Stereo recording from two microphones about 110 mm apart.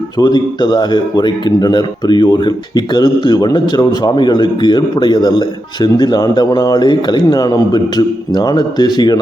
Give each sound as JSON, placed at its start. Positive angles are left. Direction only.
{"t": 0.2, "sound": "speech", "side_deg": 40}